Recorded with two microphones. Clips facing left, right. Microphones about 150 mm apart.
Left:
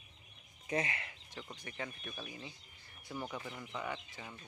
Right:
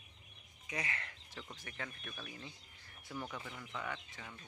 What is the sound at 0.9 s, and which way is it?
Speech, 10° left (ahead or behind).